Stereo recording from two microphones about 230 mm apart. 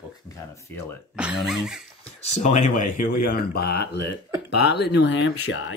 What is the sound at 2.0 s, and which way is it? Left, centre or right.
Speech, left.